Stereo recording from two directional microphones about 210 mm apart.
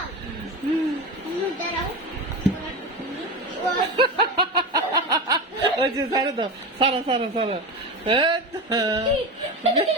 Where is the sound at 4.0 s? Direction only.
25° right (ahead or behind).